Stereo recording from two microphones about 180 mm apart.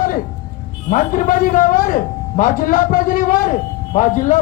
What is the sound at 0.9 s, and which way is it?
A man's voice, 50° left (ahead or behind).